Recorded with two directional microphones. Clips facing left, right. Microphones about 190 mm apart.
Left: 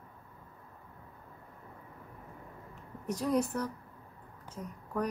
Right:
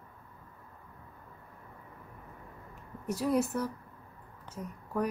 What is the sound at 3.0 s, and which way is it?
A woman's voice, 5° right (ahead or behind).